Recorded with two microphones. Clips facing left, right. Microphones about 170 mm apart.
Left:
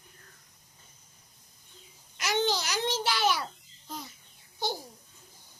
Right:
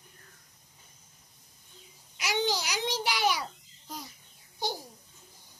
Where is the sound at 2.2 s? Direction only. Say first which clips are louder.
Left 1 dB; 10° right (ahead or behind).